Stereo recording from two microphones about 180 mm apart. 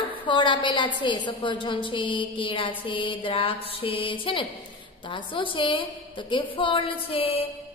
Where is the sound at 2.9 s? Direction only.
30° left (ahead or behind).